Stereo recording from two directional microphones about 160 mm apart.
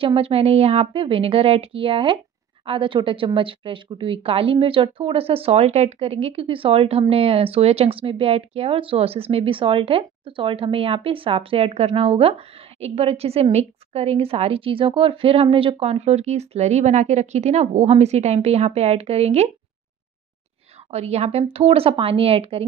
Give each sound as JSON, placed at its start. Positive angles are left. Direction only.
{"t": 0.0, "sound": "speech", "side_deg": -35}
{"t": 20.9, "sound": "speech", "side_deg": -40}